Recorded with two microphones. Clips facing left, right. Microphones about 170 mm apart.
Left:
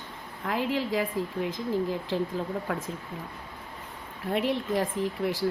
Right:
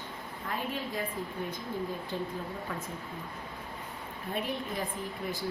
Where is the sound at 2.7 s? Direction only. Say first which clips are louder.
Left 6 dB; 65° left (ahead or behind).